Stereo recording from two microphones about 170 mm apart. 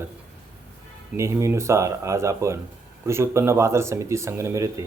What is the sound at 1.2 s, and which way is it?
Speech, 15° right (ahead or behind).